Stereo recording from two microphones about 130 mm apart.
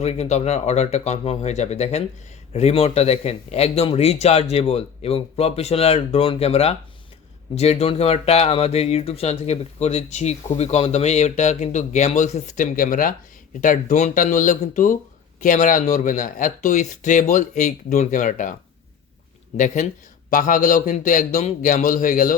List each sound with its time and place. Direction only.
0.0 s a man's voice: 55° left (ahead or behind); by 18.5 s 85° left
19.5 s speech: 80° left
20.3 s a man's voice: 90° left